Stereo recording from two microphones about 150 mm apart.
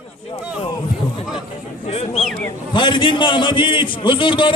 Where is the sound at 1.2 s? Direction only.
30° left (ahead or behind).